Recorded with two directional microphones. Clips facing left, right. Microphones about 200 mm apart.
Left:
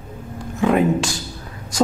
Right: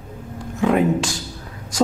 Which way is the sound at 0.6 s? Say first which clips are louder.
Left 1 dB; 5° left (ahead or behind).